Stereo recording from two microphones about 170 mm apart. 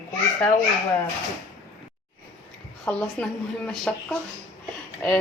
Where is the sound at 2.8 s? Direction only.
5° left (ahead or behind).